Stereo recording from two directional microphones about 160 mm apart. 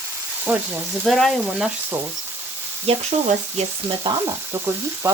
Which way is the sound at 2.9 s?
40° right (ahead or behind).